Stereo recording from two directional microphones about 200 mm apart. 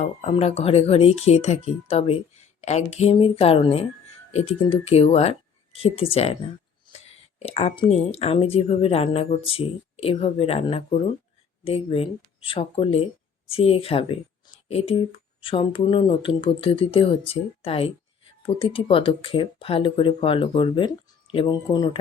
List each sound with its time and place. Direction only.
0.0 s speech: 35° left (ahead or behind)
7.3 s a woman's voice: 30° left (ahead or behind)